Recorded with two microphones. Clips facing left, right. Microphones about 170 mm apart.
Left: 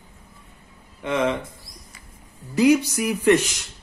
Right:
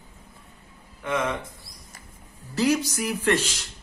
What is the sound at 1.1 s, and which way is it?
Speech, 25° left (ahead or behind).